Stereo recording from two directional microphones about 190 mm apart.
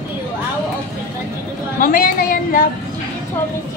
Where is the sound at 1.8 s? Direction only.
45° left (ahead or behind).